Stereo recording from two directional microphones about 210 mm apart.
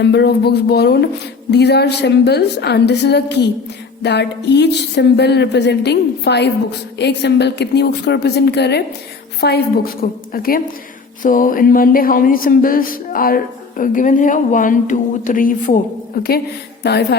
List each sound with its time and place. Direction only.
0.0 s speech: 50° left (ahead or behind)
11.2 s a sound: 40° left (ahead or behind)
16.8 s speech: 50° left (ahead or behind)